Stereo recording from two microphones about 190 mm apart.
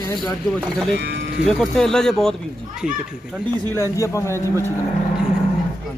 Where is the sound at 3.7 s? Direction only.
15° left (ahead or behind).